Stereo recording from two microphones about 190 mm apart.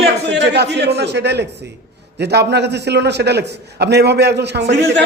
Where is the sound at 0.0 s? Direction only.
65° right (ahead or behind).